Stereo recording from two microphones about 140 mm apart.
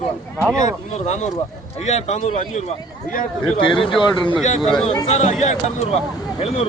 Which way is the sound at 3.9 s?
35° left (ahead or behind).